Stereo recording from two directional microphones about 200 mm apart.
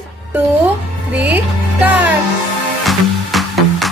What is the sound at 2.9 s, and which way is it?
Music, centre (ahead or behind).